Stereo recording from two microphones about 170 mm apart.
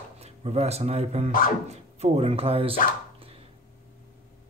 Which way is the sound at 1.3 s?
55° left (ahead or behind).